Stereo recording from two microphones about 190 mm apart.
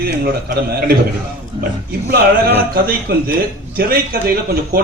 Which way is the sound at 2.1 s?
55° right (ahead or behind).